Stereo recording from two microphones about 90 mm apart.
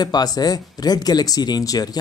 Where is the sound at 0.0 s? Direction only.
50° left (ahead or behind).